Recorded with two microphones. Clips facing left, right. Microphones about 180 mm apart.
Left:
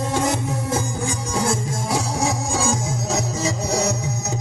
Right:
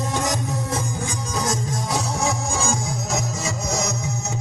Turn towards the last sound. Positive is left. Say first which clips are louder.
# left 4 dB
turn(degrees=35)  # may be behind; listen again after turning